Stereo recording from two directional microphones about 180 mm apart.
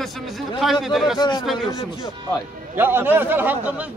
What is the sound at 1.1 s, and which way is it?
Speech, 25° left (ahead or behind).